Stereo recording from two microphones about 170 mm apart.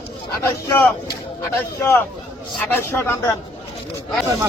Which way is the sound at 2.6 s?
10° left (ahead or behind).